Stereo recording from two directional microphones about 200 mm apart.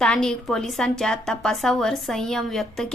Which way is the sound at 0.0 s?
5° left (ahead or behind).